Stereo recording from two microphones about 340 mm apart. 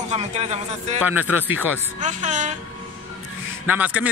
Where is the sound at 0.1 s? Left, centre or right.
Centre.